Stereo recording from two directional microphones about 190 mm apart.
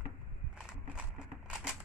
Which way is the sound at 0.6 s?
5° right (ahead or behind).